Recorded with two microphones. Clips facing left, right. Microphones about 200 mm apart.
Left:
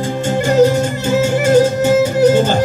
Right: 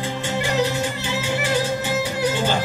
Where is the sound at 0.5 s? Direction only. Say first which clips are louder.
Left 13 dB; 45° left (ahead or behind).